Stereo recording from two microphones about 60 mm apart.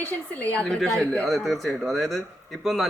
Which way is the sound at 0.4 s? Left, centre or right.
Left.